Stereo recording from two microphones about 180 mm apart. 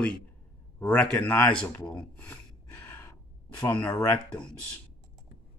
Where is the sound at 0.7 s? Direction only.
10° left (ahead or behind).